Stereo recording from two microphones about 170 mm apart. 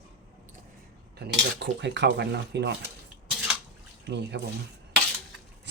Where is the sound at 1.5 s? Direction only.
90° right.